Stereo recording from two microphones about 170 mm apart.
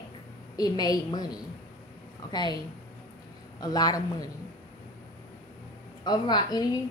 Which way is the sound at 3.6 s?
20° left (ahead or behind).